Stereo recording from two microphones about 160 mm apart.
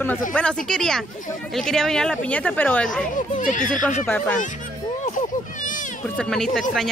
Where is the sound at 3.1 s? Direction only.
55° left (ahead or behind).